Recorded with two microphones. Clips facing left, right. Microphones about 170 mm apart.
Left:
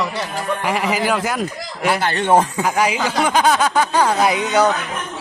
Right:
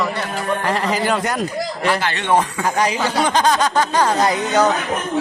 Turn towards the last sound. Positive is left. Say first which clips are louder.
# even
turn(degrees=10)  # may be behind; listen again after turning